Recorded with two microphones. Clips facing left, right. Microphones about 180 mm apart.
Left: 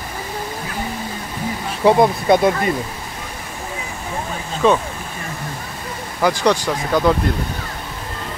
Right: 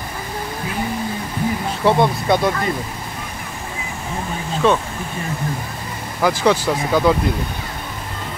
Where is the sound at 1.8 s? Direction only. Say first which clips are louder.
Left 3 dB; 20° left (ahead or behind).